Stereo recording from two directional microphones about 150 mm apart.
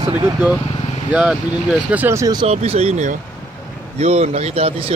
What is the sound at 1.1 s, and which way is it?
Speech, 5° right (ahead or behind).